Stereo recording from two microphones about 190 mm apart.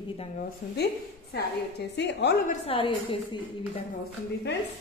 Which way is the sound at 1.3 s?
65° left (ahead or behind).